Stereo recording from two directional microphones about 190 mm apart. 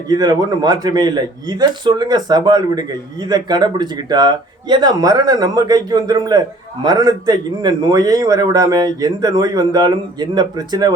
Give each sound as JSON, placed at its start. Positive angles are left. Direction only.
{"t": 0.1, "sound": "a man's voice", "side_deg": -20}